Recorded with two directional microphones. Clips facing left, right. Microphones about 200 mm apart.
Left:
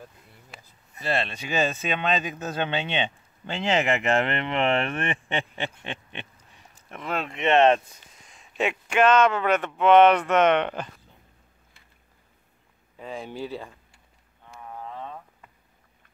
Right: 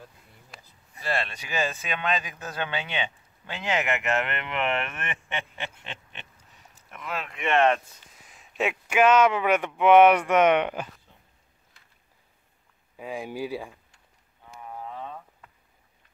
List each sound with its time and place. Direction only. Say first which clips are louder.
0.5 s a sound: left 1 dB; 5° left (ahead or behind)
1.0 s speech: left 3 dB; 25° left (ahead or behind)
6.9 s speech: left 4 dB; 30° left (ahead or behind)
8.2 s speech: left 1 dB; 5° right (ahead or behind)
12.9 s speech: right 2 dB; 10° right (ahead or behind)
14.6 s a sound: even; 10° right (ahead or behind)